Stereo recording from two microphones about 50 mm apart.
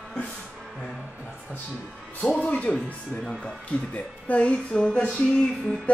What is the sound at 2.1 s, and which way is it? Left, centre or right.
Music, left.